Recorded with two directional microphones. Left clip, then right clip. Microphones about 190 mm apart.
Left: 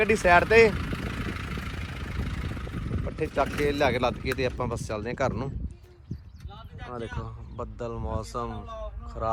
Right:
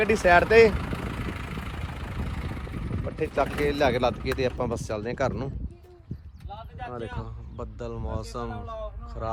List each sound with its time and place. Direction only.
0.0 s speech: 10° right (ahead or behind)
0.7 s vehicle: 35° right (ahead or behind)
3.1 s speech: 5° right (ahead or behind)
6.9 s speech: 5° right (ahead or behind)